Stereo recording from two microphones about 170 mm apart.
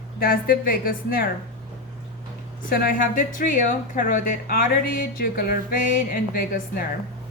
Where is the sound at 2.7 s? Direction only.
55° left (ahead or behind).